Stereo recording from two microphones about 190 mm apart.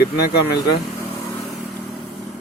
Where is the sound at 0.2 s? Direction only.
60° left (ahead or behind).